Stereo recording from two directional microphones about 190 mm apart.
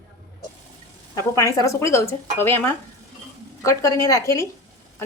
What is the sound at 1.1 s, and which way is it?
Speech, 15° left (ahead or behind).